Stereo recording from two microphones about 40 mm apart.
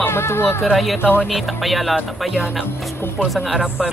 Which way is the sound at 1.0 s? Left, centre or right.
Right.